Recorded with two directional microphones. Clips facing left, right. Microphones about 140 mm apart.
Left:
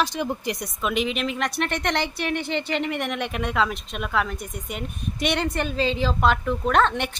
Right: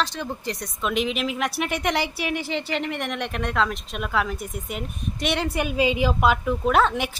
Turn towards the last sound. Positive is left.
turn(degrees=-5)  # may be behind; listen again after turning